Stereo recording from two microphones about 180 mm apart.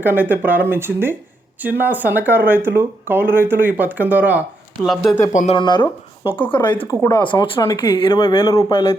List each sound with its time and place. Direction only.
0.0 s speech: 10° right (ahead or behind)
5.3 s speech: 45° left (ahead or behind)
5.5 s speech: 25° left (ahead or behind)